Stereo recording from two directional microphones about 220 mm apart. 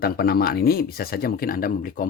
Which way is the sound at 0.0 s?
45° left (ahead or behind).